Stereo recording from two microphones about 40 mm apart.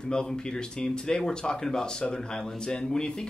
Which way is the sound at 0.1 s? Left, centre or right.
Centre.